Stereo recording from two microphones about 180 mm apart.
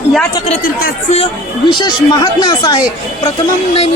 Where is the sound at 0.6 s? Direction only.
50° left (ahead or behind).